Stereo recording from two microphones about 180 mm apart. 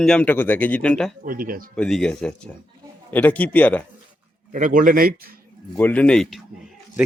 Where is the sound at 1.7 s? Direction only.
5° left (ahead or behind).